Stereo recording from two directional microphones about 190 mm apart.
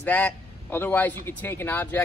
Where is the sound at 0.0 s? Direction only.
10° left (ahead or behind).